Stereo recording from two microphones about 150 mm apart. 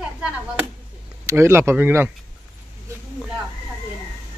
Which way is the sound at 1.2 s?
20° right (ahead or behind).